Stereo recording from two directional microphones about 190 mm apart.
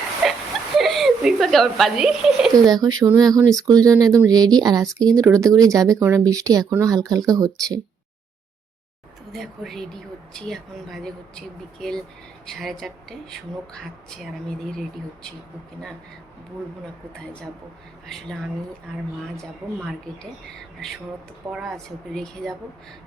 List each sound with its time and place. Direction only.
0.2 s a sound: centre (ahead or behind)
0.8 s speech: centre (ahead or behind)
2.6 s speech: 20° right (ahead or behind)
9.3 s speech: centre (ahead or behind)
18.0 s speech: centre (ahead or behind)
21.5 s speech: centre (ahead or behind)